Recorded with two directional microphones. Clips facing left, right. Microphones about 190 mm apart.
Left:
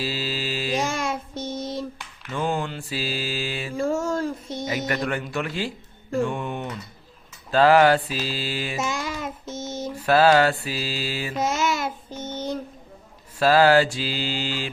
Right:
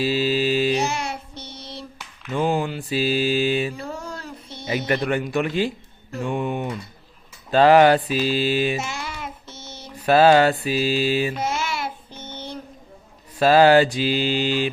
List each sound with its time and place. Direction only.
0.0 s mantra: 20° right (ahead or behind)
0.8 s child singing: 50° left (ahead or behind)
2.3 s mantra: 15° right (ahead or behind)
3.8 s a sound: 50° left (ahead or behind)
4.9 s mantra: 20° right (ahead or behind)
6.2 s a sound: 15° right (ahead or behind)
7.5 s mantra: 20° right (ahead or behind)
8.8 s child singing: 45° left (ahead or behind)
10.1 s mantra: 20° right (ahead or behind)
11.3 s child singing: 45° left (ahead or behind)
13.4 s mantra: 20° right (ahead or behind)